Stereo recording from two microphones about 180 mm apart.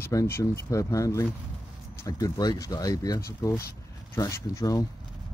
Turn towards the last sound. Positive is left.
turn(degrees=20)  # may be behind; listen again after turning